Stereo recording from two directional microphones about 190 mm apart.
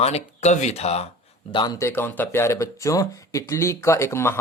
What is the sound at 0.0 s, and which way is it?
Speech, 35° left (ahead or behind).